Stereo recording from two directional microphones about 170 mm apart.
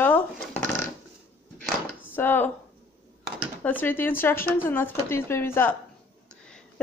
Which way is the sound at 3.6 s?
10° left (ahead or behind).